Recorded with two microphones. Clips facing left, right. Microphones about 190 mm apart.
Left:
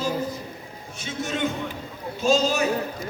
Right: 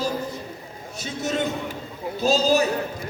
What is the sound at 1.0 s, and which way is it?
Speech, 40° right (ahead or behind).